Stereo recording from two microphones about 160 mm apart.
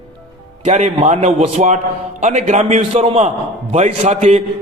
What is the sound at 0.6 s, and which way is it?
A man's voice, 45° right (ahead or behind).